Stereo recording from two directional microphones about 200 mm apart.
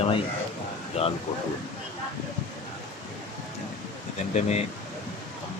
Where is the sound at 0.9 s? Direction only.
30° left (ahead or behind).